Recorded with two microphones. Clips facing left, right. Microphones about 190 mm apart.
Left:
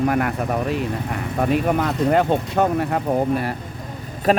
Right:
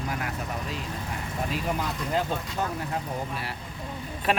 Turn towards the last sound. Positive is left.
turn(degrees=40)  # may be behind; listen again after turning